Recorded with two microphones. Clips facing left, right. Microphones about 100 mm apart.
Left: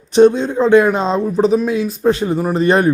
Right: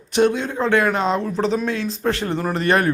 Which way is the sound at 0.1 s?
20° left (ahead or behind).